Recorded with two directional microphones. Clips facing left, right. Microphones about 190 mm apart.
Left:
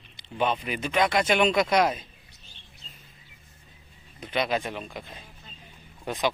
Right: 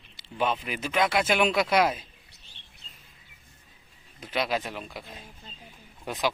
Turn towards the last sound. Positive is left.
turn(degrees=-5)  # may be behind; listen again after turning